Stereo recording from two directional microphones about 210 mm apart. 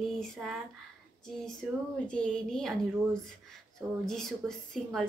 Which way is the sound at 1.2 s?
5° left (ahead or behind).